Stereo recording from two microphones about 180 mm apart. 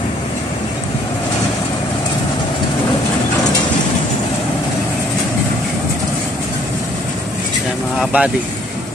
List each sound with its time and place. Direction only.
8.0 s speech: 5° right (ahead or behind)